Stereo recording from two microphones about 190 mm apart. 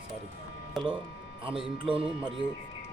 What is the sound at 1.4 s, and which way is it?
Speech, 30° right (ahead or behind).